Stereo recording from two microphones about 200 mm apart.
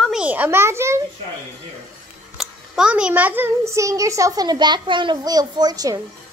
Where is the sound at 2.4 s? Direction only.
5° right (ahead or behind).